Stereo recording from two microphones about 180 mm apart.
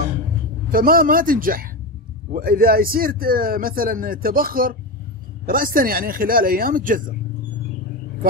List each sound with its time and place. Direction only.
0.7 s a man's voice: 50° right (ahead or behind)